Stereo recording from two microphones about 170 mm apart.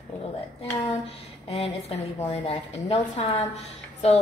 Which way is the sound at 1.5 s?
35° left (ahead or behind).